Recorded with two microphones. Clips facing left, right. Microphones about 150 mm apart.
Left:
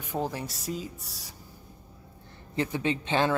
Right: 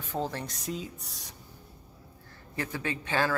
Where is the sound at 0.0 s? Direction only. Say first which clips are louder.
Left 1 dB; 15° left (ahead or behind).